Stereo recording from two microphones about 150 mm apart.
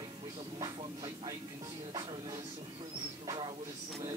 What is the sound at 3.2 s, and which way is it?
Music, 30° right (ahead or behind).